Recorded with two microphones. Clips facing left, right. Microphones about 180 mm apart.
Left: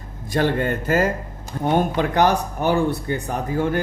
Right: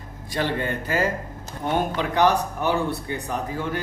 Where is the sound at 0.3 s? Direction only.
45° left (ahead or behind).